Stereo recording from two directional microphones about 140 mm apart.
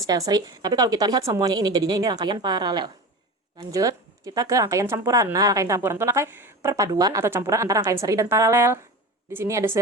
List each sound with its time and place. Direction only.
0.0 s a woman's voice: 25° right (ahead or behind)